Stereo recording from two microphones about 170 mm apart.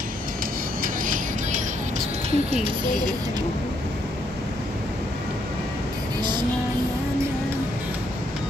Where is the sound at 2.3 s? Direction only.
40° right (ahead or behind).